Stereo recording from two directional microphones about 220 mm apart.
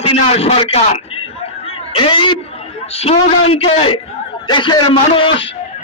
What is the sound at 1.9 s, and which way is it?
A man's voice, 25° left (ahead or behind).